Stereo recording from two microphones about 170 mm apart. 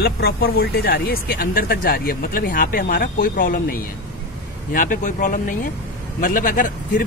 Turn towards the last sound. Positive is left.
turn(degrees=50)  # may be behind; listen again after turning